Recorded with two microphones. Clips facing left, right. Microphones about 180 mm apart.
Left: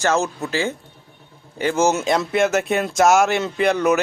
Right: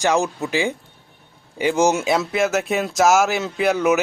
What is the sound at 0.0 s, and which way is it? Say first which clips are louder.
Speech: right 1 dB; 15° right (ahead or behind).